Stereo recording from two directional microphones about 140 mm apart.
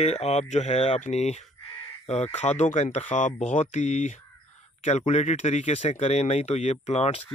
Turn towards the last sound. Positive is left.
turn(degrees=50)  # may be behind; listen again after turning